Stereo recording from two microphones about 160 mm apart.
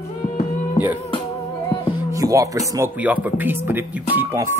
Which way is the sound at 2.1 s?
20° right (ahead or behind).